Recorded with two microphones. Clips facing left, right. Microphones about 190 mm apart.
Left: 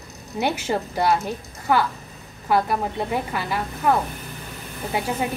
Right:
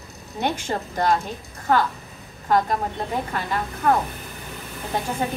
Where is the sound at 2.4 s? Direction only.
10° left (ahead or behind).